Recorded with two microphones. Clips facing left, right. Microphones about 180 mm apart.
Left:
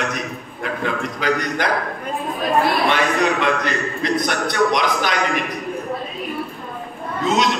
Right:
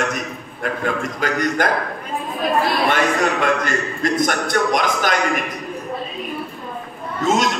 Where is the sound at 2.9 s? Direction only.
45° right (ahead or behind).